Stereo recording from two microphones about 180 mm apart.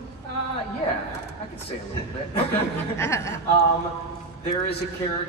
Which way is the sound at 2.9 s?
15° left (ahead or behind).